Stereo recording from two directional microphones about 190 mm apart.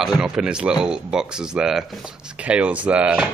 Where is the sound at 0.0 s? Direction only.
5° right (ahead or behind).